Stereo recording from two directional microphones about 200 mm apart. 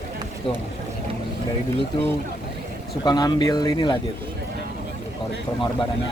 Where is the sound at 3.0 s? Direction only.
20° left (ahead or behind).